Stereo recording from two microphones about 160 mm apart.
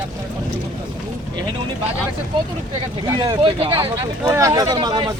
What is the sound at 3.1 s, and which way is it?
Speech, 30° right (ahead or behind).